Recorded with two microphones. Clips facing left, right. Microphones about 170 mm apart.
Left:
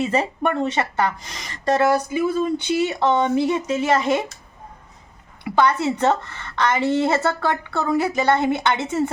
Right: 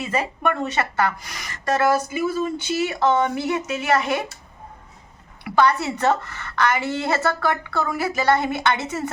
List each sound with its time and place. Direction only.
0.0 s a woman's voice: 30° left (ahead or behind)
2.0 s a sound: 5° right (ahead or behind)
2.8 s a woman's voice: 25° left (ahead or behind)
5.5 s a woman's voice: 20° left (ahead or behind)